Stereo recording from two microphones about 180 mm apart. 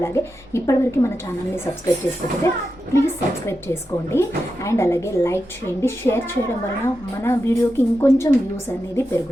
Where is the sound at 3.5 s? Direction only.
15° left (ahead or behind).